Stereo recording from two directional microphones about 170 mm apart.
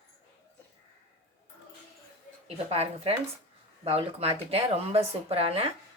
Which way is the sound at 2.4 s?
35° right (ahead or behind).